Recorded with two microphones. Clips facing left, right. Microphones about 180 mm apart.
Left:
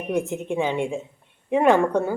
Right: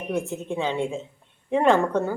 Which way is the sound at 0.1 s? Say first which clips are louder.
Left 3 dB; 15° left (ahead or behind).